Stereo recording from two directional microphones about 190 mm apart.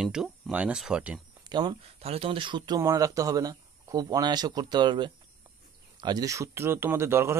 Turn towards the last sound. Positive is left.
turn(degrees=-15)  # may be behind; listen again after turning